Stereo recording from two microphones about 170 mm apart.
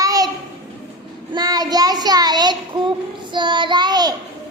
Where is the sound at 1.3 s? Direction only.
20° right (ahead or behind).